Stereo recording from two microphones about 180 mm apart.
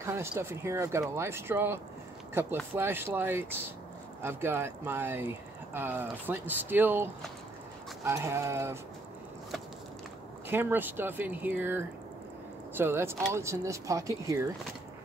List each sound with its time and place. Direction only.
0.0 s speech: 15° right (ahead or behind)
10.5 s speech: 10° right (ahead or behind)